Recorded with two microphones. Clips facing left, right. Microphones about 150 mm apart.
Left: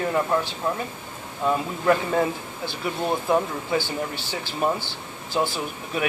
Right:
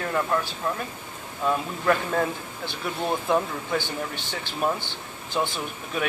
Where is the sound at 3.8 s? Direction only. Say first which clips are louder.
Left 2 dB; 15° right (ahead or behind).